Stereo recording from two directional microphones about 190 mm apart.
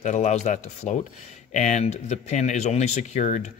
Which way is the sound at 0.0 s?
35° left (ahead or behind).